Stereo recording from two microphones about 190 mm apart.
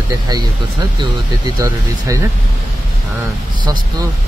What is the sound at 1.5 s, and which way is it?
Speech, 15° right (ahead or behind).